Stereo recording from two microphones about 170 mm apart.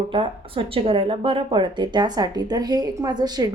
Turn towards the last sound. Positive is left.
turn(degrees=-25)  # may be behind; listen again after turning